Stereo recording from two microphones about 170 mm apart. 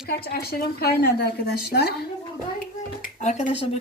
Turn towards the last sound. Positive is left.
turn(degrees=40)  # may be behind; listen again after turning